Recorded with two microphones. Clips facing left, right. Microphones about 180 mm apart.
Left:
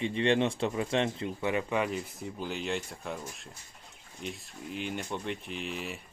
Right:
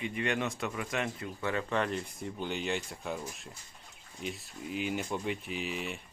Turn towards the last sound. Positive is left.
turn(degrees=0)  # may be behind; listen again after turning